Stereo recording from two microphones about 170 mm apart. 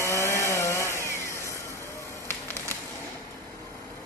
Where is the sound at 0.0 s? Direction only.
15° left (ahead or behind).